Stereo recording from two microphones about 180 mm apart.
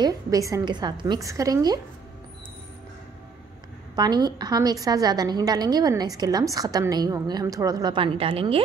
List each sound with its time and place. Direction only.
0.0 s a woman's voice: 20° right (ahead or behind)
3.9 s a woman's voice: 20° right (ahead or behind)